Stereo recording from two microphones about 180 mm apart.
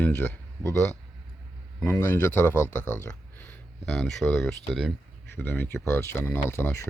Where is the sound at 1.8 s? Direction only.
10° left (ahead or behind).